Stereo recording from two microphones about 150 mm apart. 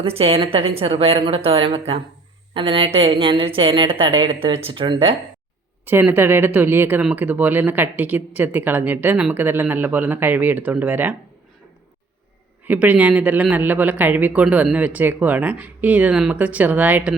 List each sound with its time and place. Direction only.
0.0 s a woman's voice: 40° right (ahead or behind)
5.8 s speech: 15° right (ahead or behind)
12.6 s speech: 10° right (ahead or behind)